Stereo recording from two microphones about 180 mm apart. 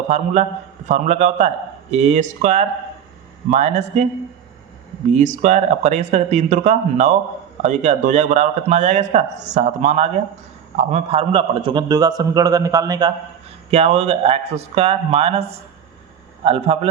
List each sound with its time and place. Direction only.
0.1 s a man's voice: 40° right (ahead or behind)
5.1 s a man's voice: 40° right (ahead or behind); by 13.1 s 20° right (ahead or behind)
13.7 s a man's voice: 35° right (ahead or behind)